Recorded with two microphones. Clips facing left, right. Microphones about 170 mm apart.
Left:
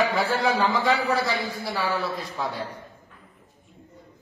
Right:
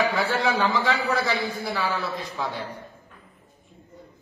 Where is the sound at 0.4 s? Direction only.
10° left (ahead or behind).